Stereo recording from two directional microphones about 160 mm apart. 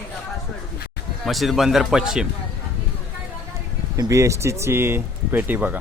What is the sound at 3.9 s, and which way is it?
A man's voice, 20° right (ahead or behind).